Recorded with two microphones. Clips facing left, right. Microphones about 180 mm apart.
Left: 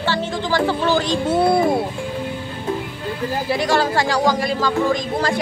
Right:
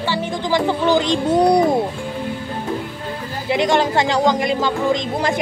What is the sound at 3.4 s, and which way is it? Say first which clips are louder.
Speech: right 3 dB; 20° right (ahead or behind).